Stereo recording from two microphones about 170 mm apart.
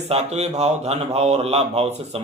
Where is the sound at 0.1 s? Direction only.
40° right (ahead or behind).